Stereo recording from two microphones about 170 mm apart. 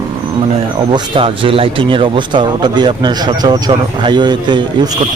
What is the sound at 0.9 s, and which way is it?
Speech, 30° right (ahead or behind).